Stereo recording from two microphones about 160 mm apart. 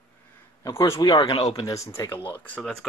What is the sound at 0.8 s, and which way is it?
Speech, 20° left (ahead or behind).